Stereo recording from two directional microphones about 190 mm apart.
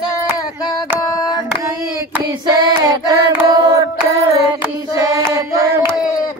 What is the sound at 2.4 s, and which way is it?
Child singing, 20° right (ahead or behind).